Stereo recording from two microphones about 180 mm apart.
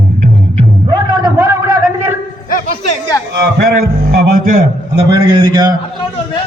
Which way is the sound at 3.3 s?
60° right (ahead or behind).